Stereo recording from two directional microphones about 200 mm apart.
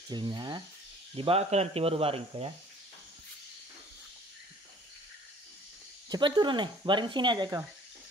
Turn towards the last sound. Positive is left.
turn(degrees=-20)  # may be behind; listen again after turning